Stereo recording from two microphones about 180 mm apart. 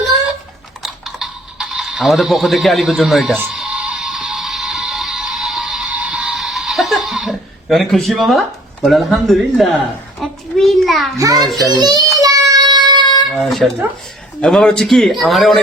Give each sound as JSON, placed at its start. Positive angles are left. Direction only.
{"t": 0.8, "sound": "a sound", "side_deg": 0}
{"t": 3.3, "sound": "music", "side_deg": -5}
{"t": 10.2, "sound": "a sound", "side_deg": 0}
{"t": 11.3, "sound": "a man's voice", "side_deg": 0}
{"t": 11.8, "sound": "a child's voice", "side_deg": -20}
{"t": 12.2, "sound": "child singing", "side_deg": -20}
{"t": 13.3, "sound": "a man's voice", "side_deg": 0}